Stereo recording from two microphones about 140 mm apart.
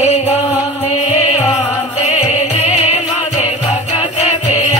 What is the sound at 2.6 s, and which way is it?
Music, 45° left (ahead or behind).